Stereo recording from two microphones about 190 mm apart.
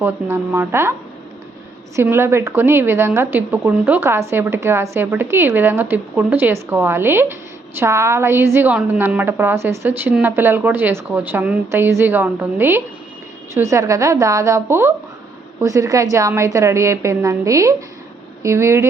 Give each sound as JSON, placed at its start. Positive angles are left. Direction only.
{"t": 0.0, "sound": "a woman's voice", "side_deg": -10}
{"t": 2.0, "sound": "a woman's voice", "side_deg": -10}